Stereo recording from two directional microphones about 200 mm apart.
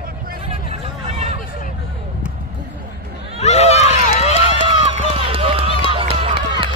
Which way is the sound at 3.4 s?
35° left (ahead or behind).